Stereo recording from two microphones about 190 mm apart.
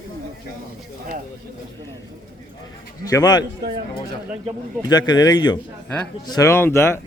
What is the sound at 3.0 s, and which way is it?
Speech, 20° left (ahead or behind).